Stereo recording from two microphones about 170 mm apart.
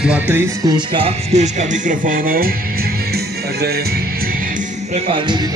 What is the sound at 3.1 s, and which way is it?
Music, 70° right (ahead or behind).